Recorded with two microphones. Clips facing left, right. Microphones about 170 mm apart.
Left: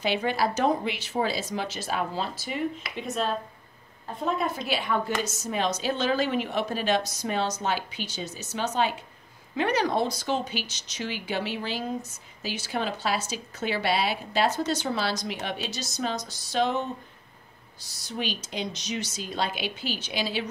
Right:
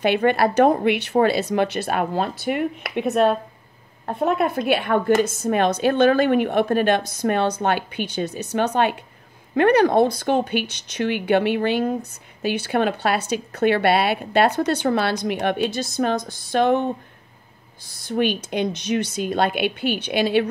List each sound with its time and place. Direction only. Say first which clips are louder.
0.0 s speech: right 8 dB; 60° right (ahead or behind)